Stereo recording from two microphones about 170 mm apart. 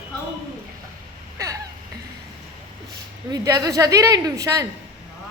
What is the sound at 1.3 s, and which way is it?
Speech, 20° right (ahead or behind).